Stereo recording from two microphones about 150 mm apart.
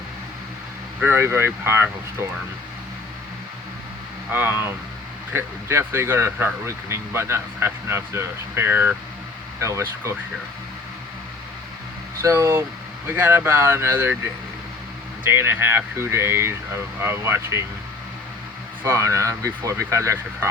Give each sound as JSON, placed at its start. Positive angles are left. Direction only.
{"t": 0.9, "sound": "speech", "side_deg": -15}
{"t": 4.3, "sound": "speech", "side_deg": -15}
{"t": 12.2, "sound": "speech", "side_deg": -20}
{"t": 15.2, "sound": "speech", "side_deg": -15}
{"t": 18.8, "sound": "speech", "side_deg": -20}